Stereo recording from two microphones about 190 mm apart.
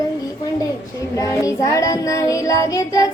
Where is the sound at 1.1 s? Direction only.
15° left (ahead or behind).